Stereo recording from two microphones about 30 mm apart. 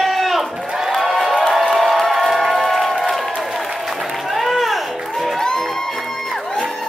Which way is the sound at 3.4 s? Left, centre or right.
Centre.